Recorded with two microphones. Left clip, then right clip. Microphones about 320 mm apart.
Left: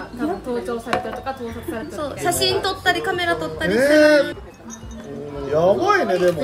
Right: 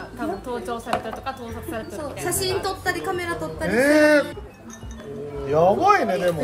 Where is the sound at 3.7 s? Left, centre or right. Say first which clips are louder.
Left 3 dB; centre.